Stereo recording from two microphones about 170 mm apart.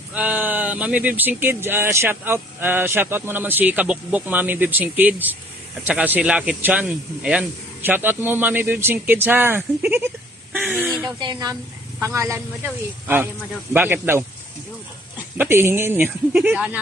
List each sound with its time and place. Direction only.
0.1 s speech: 10° right (ahead or behind)
11.1 s speech: 25° right (ahead or behind)
15.3 s speech: 15° right (ahead or behind)